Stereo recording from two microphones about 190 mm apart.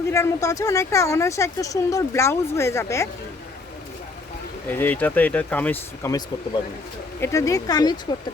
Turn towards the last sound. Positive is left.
turn(degrees=20)  # may be behind; listen again after turning